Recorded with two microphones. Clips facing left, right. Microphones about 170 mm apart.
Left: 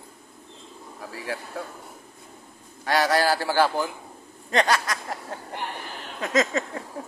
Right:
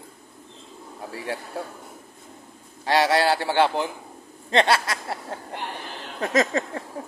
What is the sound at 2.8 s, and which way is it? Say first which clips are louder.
A man's voice: right 2 dB; 25° right (ahead or behind).